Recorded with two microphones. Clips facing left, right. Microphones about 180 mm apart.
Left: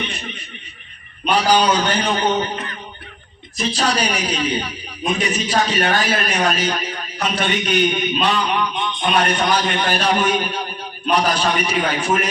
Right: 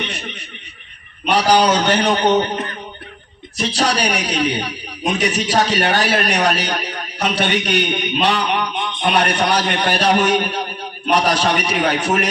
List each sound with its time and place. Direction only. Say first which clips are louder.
0.0 s a man's voice: right 1 dB; 70° right (ahead or behind)
3.6 s a man's voice: right 1 dB; 70° right (ahead or behind)